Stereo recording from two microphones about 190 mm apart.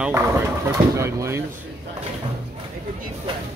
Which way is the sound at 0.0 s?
15° right (ahead or behind).